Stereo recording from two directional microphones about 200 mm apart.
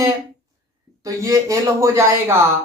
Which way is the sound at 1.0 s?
15° right (ahead or behind).